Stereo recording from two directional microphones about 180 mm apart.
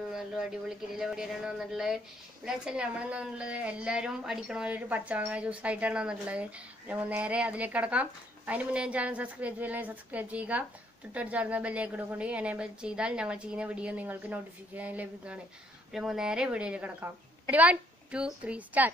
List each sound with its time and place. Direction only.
0.1 s a woman's voice: centre (ahead or behind)